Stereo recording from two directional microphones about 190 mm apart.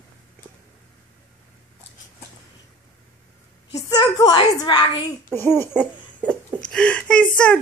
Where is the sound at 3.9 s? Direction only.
20° left (ahead or behind).